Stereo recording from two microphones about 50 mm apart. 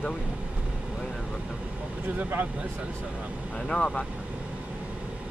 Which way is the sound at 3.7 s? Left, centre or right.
Centre.